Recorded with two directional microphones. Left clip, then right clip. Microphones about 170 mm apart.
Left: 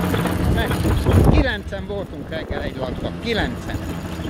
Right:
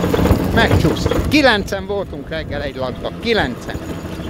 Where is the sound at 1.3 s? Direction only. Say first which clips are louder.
Right 8 dB; 45° right (ahead or behind).